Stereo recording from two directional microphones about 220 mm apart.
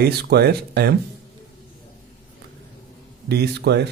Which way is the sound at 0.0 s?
45° right (ahead or behind).